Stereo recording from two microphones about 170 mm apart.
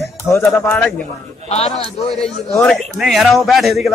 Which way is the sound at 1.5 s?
40° left (ahead or behind).